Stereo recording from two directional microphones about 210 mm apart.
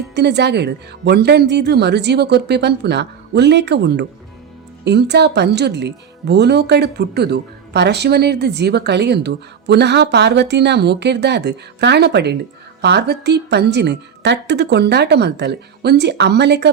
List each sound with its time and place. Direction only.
0.1 s speech: 55° right (ahead or behind)